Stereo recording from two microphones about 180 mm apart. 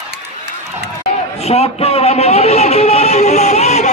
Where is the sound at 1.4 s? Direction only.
35° left (ahead or behind).